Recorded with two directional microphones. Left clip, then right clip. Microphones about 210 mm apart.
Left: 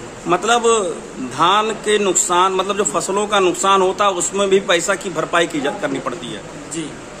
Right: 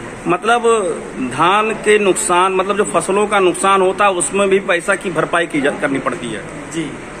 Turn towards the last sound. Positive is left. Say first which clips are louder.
# right 4 dB
turn(degrees=5)  # may be behind; listen again after turning